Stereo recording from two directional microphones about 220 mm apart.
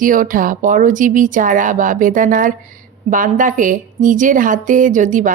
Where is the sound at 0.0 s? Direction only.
40° right (ahead or behind).